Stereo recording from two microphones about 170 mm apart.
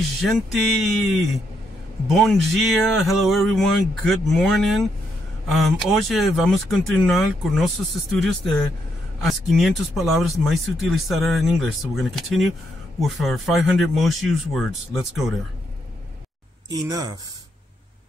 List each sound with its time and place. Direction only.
0.2 s speech: centre (ahead or behind)
16.6 s speech: 20° right (ahead or behind)